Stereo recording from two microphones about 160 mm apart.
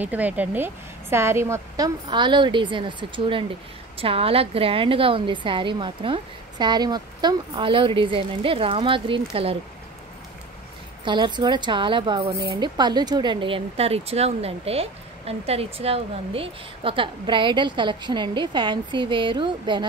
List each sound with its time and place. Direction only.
0.0 s a woman's voice: 10° right (ahead or behind)
2.0 s a woman's voice: 30° right (ahead or behind)
11.1 s a woman's voice: 30° right (ahead or behind)